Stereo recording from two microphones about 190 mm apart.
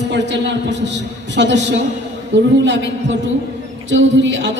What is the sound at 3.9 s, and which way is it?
Speech, 70° right (ahead or behind).